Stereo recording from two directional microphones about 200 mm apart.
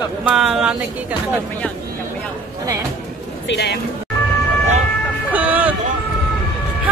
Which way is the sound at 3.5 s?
55° left (ahead or behind).